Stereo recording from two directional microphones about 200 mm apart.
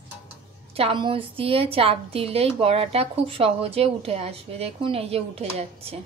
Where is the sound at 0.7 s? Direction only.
25° right (ahead or behind).